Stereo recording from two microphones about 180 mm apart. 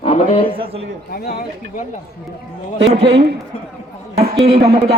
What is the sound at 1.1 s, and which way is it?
Speech, 60° left (ahead or behind).